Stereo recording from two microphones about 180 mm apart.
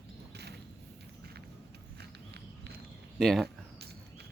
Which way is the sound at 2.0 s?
65° right (ahead or behind).